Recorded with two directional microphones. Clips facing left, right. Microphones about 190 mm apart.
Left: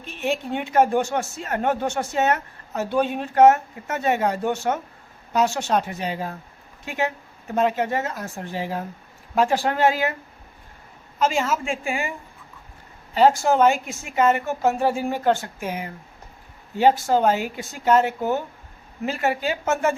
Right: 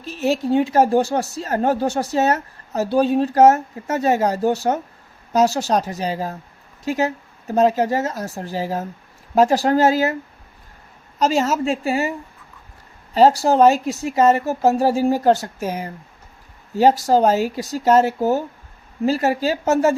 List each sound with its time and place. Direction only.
0.0 s speech: 40° right (ahead or behind)
11.2 s speech: 40° right (ahead or behind)
13.1 s speech: 35° right (ahead or behind)